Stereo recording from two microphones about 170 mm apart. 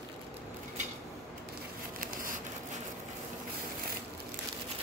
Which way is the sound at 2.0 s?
55° right (ahead or behind).